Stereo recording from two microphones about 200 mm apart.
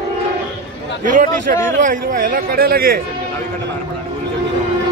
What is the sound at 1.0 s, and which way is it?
Speech, 40° right (ahead or behind).